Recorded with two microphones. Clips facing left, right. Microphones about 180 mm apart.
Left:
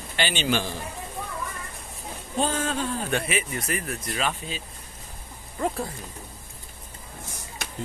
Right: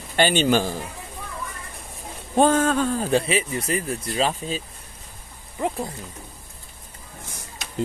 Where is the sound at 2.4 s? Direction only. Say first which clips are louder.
Right 8 dB; 50° right (ahead or behind).